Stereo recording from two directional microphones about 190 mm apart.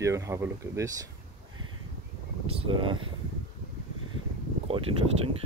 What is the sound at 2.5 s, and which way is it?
Speech, 25° right (ahead or behind).